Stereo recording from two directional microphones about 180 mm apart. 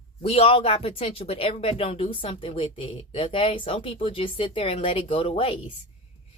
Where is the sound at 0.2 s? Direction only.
35° left (ahead or behind).